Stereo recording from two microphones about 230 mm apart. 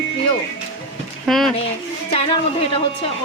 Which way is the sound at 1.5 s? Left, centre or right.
Left.